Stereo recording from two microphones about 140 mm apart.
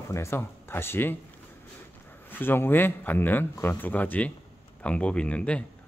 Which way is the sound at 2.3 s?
15° left (ahead or behind).